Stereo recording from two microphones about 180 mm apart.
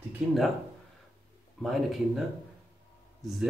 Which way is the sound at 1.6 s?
Centre (ahead or behind).